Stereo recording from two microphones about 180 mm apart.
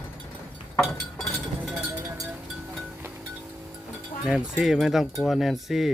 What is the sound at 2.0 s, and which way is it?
Vehicle, 20° right (ahead or behind).